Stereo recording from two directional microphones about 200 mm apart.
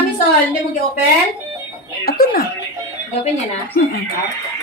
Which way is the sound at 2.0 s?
50° left (ahead or behind).